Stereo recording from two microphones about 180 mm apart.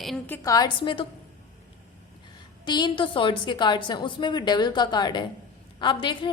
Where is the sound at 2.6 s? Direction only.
25° left (ahead or behind).